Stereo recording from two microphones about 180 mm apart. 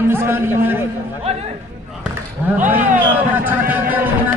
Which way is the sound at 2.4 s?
10° right (ahead or behind).